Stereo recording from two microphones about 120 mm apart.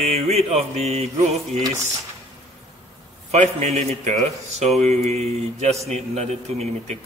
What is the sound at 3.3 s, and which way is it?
A man's voice, 65° right (ahead or behind).